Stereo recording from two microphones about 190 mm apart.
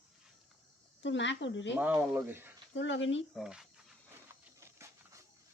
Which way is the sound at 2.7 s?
75° left (ahead or behind).